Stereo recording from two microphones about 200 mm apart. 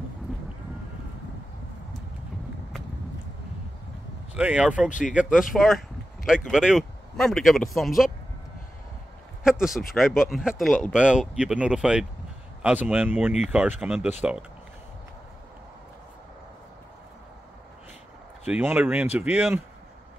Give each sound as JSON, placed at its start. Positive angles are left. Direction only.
{"t": 4.4, "sound": "speech", "side_deg": -5}
{"t": 4.8, "sound": "speech", "side_deg": 40}
{"t": 5.1, "sound": "speech", "side_deg": -5}
{"t": 9.4, "sound": "speech", "side_deg": -5}
{"t": 18.5, "sound": "speech", "side_deg": -10}